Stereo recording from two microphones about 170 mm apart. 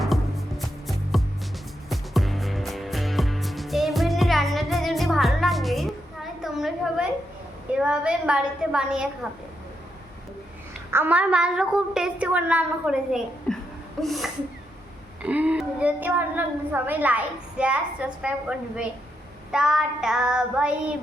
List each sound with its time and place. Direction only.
0.0 s music: centre (ahead or behind)
1.9 s music: centre (ahead or behind)
6.4 s a sound: centre (ahead or behind)
10.9 s a woman's voice: 10° right (ahead or behind)